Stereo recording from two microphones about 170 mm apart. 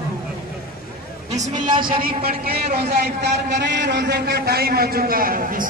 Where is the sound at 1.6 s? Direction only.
30° right (ahead or behind).